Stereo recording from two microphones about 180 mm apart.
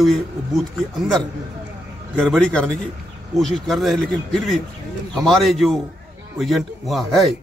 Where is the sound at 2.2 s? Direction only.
Centre (ahead or behind).